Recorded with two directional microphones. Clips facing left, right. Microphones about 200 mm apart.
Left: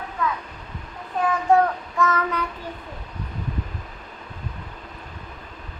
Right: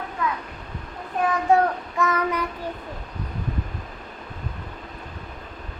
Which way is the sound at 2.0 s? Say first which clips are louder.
Even; 15° right (ahead or behind).